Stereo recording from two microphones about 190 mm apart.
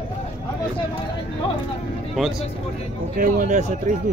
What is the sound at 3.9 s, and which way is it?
Speech, 40° right (ahead or behind).